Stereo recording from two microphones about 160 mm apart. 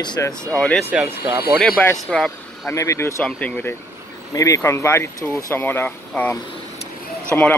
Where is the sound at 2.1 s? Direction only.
Centre (ahead or behind).